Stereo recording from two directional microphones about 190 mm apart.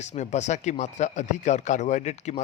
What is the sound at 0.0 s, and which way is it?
Speech, 35° left (ahead or behind).